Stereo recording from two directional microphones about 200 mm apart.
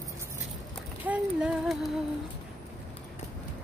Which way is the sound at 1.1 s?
5° right (ahead or behind).